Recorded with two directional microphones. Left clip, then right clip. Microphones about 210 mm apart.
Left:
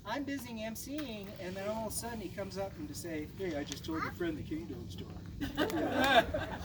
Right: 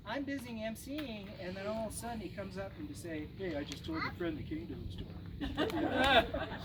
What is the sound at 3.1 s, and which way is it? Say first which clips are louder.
Speech: left 2 dB; 5° left (ahead or behind).